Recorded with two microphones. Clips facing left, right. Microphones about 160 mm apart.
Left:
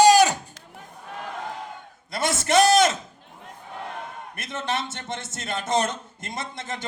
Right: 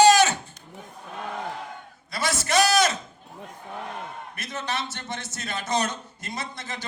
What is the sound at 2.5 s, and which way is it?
Speech, 55° left (ahead or behind).